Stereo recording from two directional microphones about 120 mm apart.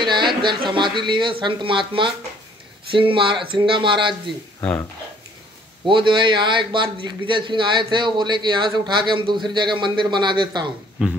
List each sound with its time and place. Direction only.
0.1 s a man's voice: 40° right (ahead or behind)
5.9 s a man's voice: 45° right (ahead or behind)
11.0 s speech: 10° right (ahead or behind)